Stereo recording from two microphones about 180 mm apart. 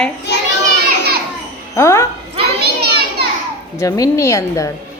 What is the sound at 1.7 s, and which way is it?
Speech, 15° left (ahead or behind).